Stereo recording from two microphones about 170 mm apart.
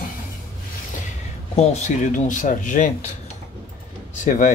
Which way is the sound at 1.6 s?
40° left (ahead or behind).